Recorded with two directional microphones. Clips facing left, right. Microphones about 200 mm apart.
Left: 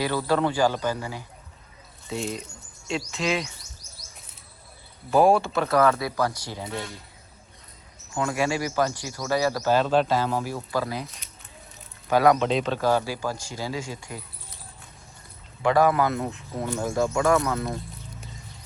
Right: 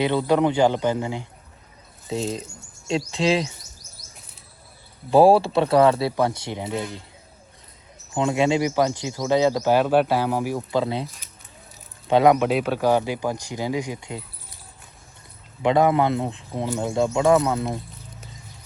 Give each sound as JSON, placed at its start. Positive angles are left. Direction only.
{"t": 0.0, "sound": "speech", "side_deg": -20}
{"t": 2.0, "sound": "speech", "side_deg": -35}
{"t": 5.1, "sound": "speech", "side_deg": -30}
{"t": 8.1, "sound": "speech", "side_deg": -20}
{"t": 15.6, "sound": "speech", "side_deg": -20}